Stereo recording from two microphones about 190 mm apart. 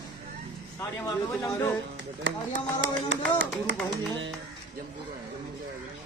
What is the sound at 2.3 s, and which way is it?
Speech, 75° right (ahead or behind).